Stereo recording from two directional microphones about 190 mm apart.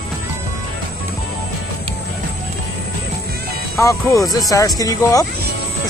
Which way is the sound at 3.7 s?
15° left (ahead or behind).